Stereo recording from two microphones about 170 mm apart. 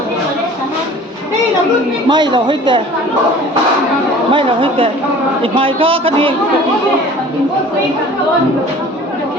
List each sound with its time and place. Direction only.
2.0 s a man's voice: 25° right (ahead or behind)
4.3 s a man's voice: 30° right (ahead or behind)